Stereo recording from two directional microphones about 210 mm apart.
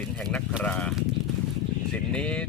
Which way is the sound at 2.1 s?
5° left (ahead or behind).